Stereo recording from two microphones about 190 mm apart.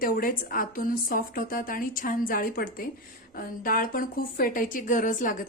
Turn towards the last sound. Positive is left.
turn(degrees=45)  # may be behind; listen again after turning